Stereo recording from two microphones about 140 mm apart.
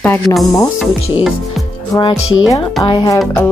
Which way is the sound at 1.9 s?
35° left (ahead or behind).